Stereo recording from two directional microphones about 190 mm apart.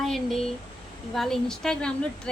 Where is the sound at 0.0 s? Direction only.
Centre (ahead or behind).